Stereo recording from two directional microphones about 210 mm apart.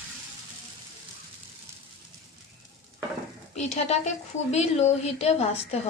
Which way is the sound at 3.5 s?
35° left (ahead or behind).